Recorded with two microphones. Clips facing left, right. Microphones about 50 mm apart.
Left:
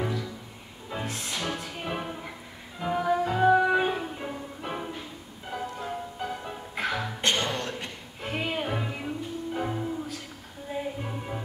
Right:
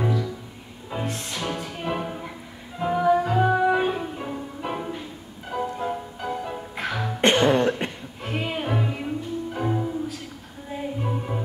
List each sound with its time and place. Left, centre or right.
0.0 s music: centre
6.7 s music: centre
7.2 s throat clearing: right
8.2 s music: centre